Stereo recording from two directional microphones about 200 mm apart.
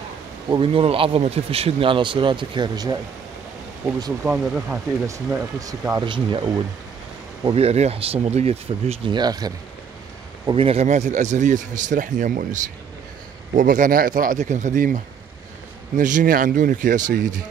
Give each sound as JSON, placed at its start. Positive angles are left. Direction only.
{"t": 0.5, "sound": "speech", "side_deg": -25}
{"t": 4.0, "sound": "speech", "side_deg": -10}
{"t": 16.0, "sound": "speech", "side_deg": -40}